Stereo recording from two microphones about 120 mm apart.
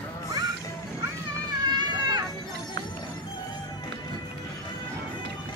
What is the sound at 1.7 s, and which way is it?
Children playing, 35° right (ahead or behind).